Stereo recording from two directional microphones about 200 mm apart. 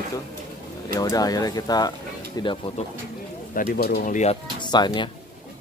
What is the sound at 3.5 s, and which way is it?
Speech, 45° left (ahead or behind).